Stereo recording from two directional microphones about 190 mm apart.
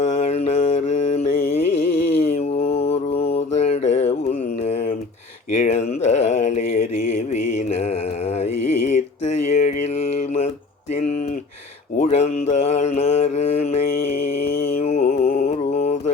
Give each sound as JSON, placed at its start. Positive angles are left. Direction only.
{"t": 0.0, "sound": "mantra", "side_deg": 35}
{"t": 4.6, "sound": "a sound", "side_deg": 35}
{"t": 7.5, "sound": "mantra", "side_deg": 35}
{"t": 12.1, "sound": "mantra", "side_deg": 35}
{"t": 14.8, "sound": "music", "side_deg": 35}